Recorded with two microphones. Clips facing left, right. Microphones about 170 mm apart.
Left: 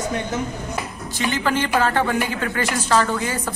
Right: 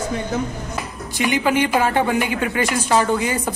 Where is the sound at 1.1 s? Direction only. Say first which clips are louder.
Right 3 dB; 15° right (ahead or behind).